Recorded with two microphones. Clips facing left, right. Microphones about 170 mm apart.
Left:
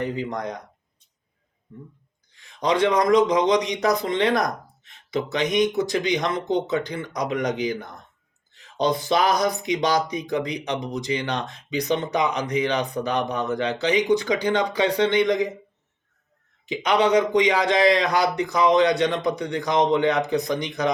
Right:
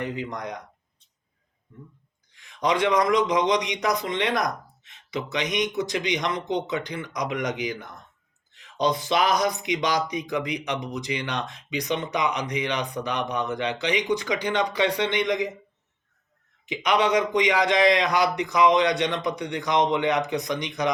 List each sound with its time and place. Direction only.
0.0 s speech: 35° left (ahead or behind)
2.3 s speech: 30° left (ahead or behind)
16.6 s speech: 30° left (ahead or behind)